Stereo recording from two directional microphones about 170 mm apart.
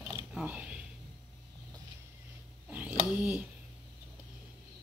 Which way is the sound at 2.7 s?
10° right (ahead or behind).